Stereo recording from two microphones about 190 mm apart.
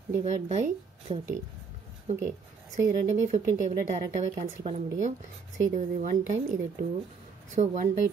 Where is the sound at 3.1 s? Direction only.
40° right (ahead or behind).